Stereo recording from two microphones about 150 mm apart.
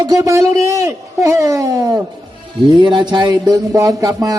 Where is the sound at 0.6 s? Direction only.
20° right (ahead or behind).